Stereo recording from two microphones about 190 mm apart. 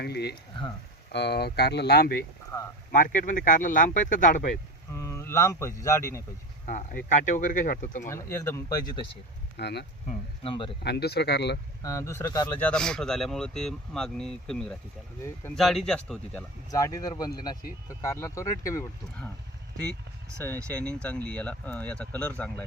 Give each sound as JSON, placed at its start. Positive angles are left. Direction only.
{"t": 0.0, "sound": "speech", "side_deg": 60}
{"t": 2.5, "sound": "speech", "side_deg": 20}
{"t": 2.9, "sound": "speech", "side_deg": 45}
{"t": 4.9, "sound": "speech", "side_deg": 15}
{"t": 6.7, "sound": "speech", "side_deg": 40}
{"t": 8.0, "sound": "speech", "side_deg": 15}
{"t": 9.6, "sound": "speech", "side_deg": 60}
{"t": 10.1, "sound": "speech", "side_deg": 30}
{"t": 10.8, "sound": "speech", "side_deg": 60}
{"t": 11.8, "sound": "speech", "side_deg": 15}
{"t": 16.7, "sound": "speech", "side_deg": 20}
{"t": 20.7, "sound": "speech", "side_deg": 5}